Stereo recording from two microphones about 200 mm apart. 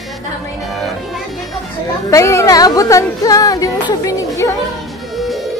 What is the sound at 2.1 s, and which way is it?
Speech, 15° left (ahead or behind).